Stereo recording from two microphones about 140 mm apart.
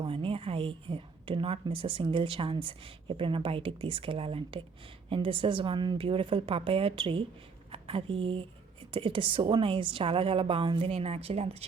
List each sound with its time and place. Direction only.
0.0 s a woman's voice: 40° right (ahead or behind)